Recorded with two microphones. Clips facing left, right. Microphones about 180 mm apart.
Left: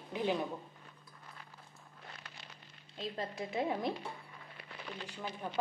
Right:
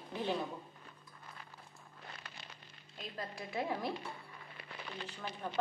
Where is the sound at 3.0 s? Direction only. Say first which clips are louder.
Left 5 dB; 20° left (ahead or behind).